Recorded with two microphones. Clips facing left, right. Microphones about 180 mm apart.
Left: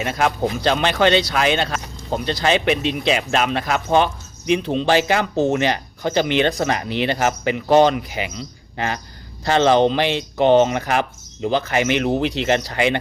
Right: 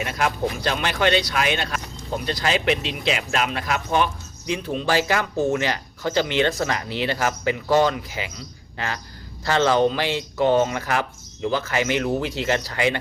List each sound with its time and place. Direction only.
0.0 s speech: 25° left (ahead or behind)
9.4 s speech: 20° left (ahead or behind)